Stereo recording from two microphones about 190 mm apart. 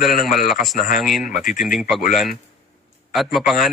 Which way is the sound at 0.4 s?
50° left (ahead or behind).